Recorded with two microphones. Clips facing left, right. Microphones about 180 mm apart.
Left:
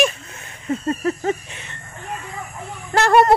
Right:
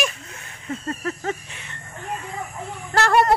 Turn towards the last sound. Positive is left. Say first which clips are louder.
# left 4 dB
turn(degrees=20)  # may be behind; listen again after turning